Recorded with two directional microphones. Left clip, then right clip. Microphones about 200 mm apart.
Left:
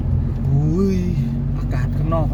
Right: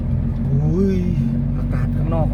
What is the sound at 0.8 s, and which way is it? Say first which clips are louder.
Vehicle: right 2 dB; 25° left (ahead or behind).